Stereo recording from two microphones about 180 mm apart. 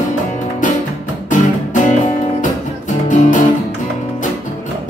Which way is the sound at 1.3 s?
45° left (ahead or behind).